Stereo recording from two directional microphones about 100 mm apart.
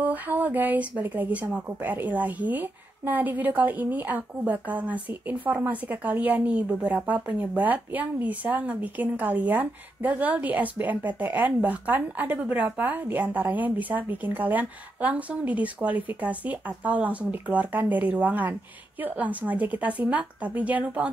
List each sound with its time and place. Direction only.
0.0 s speech: 15° right (ahead or behind)